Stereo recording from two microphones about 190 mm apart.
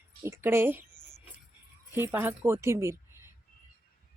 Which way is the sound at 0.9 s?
40° left (ahead or behind).